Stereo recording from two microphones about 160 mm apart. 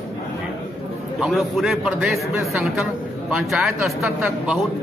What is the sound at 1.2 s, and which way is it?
A man's voice, centre (ahead or behind).